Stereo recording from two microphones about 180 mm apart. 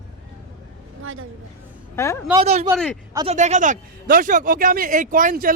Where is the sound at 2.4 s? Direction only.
40° right (ahead or behind).